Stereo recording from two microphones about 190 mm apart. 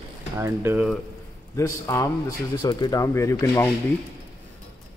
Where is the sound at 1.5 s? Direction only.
15° left (ahead or behind).